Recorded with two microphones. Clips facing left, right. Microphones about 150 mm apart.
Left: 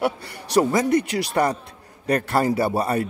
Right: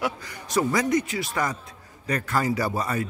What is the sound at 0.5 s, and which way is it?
Speech, 30° left (ahead or behind).